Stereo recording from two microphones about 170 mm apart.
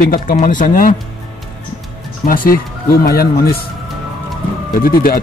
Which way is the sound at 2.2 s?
60° left (ahead or behind).